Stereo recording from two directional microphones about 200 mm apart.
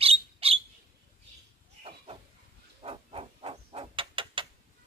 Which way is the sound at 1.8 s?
30° right (ahead or behind).